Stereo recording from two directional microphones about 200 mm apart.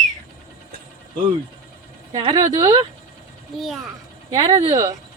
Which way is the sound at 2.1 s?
20° right (ahead or behind).